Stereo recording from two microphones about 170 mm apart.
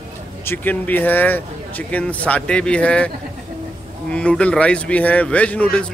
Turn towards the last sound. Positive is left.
turn(degrees=5)  # may be behind; listen again after turning